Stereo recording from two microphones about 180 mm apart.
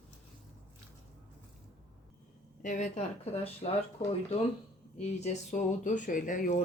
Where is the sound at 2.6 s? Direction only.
40° left (ahead or behind).